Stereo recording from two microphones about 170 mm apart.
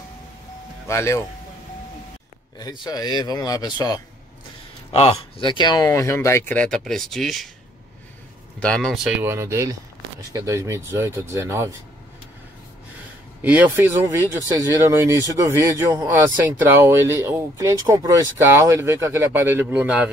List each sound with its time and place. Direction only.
0.8 s speech: 15° left (ahead or behind)
2.6 s speech: 25° left (ahead or behind)
4.9 s speech: 35° left (ahead or behind); by 7.4 s centre (ahead or behind)
8.5 s speech: 5° left (ahead or behind)
9.2 s speech: 15° right (ahead or behind)
13.4 s speech: 10° right (ahead or behind)